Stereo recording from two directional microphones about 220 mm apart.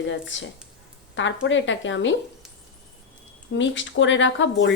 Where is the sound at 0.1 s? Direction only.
55° left (ahead or behind).